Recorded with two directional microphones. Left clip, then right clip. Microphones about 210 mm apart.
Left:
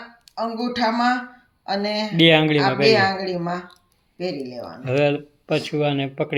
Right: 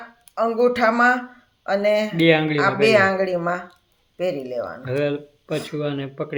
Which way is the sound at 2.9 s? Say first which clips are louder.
Right 2 dB; 55° right (ahead or behind).